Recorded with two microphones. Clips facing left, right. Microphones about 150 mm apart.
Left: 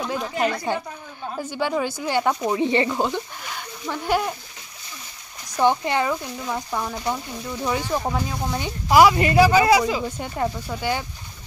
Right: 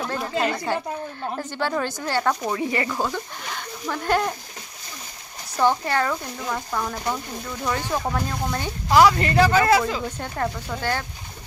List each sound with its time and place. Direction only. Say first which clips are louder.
0.7 s speech: right 1 dB; 20° left (ahead or behind)
3.4 s a sound: right 1 dB; 5° left (ahead or behind)
5.6 s speech: left 1 dB; 15° left (ahead or behind)